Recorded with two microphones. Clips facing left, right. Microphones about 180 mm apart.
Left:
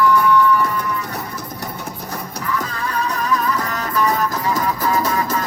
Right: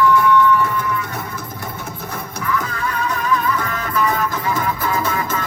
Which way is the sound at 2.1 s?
35° left (ahead or behind).